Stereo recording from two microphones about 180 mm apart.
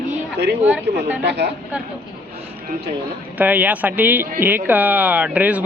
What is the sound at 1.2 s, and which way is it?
Speech, 70° right (ahead or behind).